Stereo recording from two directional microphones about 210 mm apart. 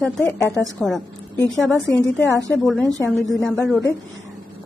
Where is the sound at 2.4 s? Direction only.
Centre (ahead or behind).